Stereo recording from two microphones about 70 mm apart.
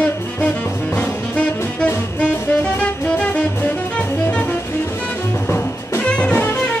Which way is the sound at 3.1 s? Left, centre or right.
Centre.